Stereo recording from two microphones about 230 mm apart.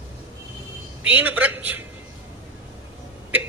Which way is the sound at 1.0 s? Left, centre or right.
Centre.